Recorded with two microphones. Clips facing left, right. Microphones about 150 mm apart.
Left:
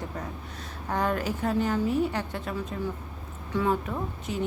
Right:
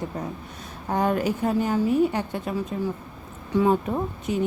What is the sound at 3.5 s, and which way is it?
Speech, 15° right (ahead or behind).